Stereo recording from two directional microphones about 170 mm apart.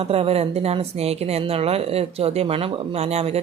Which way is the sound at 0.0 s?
35° right (ahead or behind).